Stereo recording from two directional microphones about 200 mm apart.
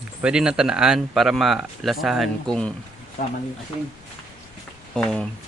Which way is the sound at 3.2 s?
40° left (ahead or behind).